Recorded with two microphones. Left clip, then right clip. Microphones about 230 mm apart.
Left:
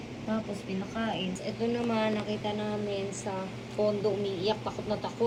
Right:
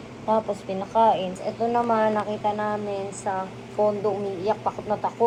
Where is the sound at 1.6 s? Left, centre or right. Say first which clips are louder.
Right 9 dB; right.